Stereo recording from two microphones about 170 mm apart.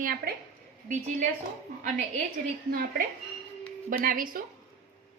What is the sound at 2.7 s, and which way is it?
A woman's voice, 60° right (ahead or behind).